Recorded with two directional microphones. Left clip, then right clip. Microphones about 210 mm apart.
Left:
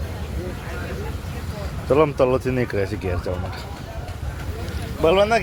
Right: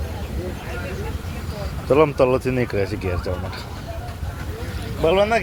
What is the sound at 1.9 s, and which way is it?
Speech, centre (ahead or behind).